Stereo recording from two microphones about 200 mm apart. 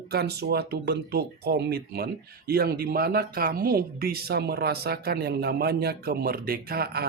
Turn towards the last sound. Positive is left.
turn(degrees=-50)  # may be behind; listen again after turning